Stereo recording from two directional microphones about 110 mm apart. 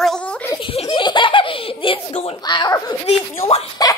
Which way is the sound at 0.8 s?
45° left (ahead or behind).